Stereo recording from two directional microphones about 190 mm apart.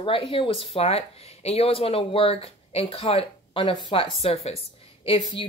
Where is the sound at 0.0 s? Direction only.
30° left (ahead or behind).